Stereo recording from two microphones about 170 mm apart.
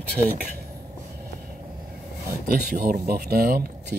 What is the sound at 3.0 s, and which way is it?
Speech, 65° right (ahead or behind).